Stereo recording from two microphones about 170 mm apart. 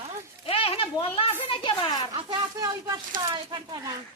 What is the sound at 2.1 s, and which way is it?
Speech, 25° right (ahead or behind).